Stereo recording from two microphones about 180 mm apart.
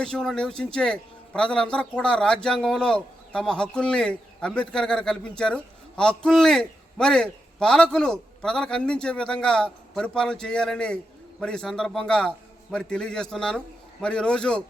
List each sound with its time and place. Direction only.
0.0 s a man's voice: 5° left (ahead or behind)